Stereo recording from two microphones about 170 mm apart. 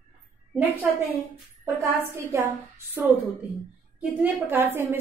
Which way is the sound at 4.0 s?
10° right (ahead or behind).